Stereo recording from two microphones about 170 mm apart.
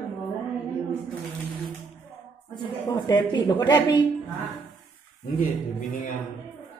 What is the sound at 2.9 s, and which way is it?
Speech, 25° left (ahead or behind).